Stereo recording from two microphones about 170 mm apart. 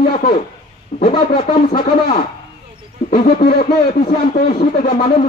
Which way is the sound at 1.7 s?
55° left (ahead or behind).